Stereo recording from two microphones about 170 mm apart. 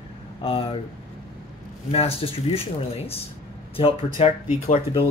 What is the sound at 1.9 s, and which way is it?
Speech, 35° left (ahead or behind).